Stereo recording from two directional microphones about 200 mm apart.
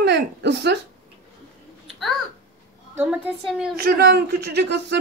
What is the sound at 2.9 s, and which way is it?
Speech, 10° right (ahead or behind).